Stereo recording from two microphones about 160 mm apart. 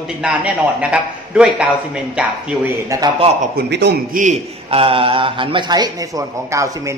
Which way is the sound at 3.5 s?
90° right.